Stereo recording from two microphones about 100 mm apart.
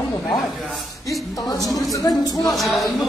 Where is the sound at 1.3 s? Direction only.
35° left (ahead or behind).